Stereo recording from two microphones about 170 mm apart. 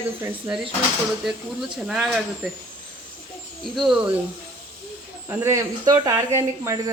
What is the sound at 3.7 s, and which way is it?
Speech, centre (ahead or behind).